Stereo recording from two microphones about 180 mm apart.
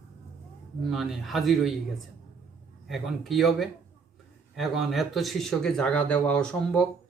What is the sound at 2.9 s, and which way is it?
Speech, centre (ahead or behind).